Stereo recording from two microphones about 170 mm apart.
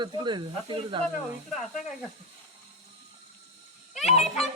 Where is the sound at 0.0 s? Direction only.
25° right (ahead or behind).